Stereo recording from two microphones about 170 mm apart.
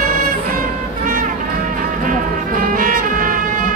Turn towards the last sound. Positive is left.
turn(degrees=-55)  # may be behind; listen again after turning